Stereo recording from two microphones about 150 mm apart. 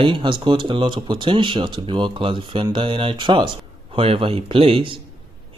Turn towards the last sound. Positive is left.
turn(degrees=-40)  # may be behind; listen again after turning